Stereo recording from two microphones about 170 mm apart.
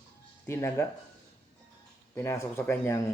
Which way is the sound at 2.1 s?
15° left (ahead or behind).